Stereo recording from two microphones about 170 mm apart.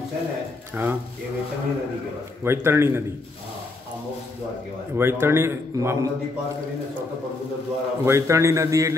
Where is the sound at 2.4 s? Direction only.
15° right (ahead or behind).